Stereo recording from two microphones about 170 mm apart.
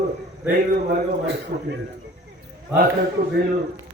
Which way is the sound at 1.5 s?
65° right (ahead or behind).